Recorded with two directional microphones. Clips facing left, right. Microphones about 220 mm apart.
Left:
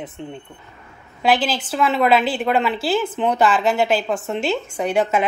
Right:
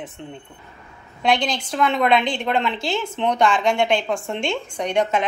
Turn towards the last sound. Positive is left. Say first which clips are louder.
# left 2 dB
turn(degrees=5)  # may be behind; listen again after turning